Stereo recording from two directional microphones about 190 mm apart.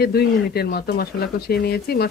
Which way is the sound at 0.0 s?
55° left (ahead or behind).